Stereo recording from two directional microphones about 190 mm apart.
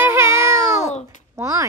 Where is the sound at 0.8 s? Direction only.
35° left (ahead or behind).